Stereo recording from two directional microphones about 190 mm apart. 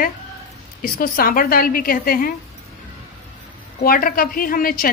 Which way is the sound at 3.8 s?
50° left (ahead or behind).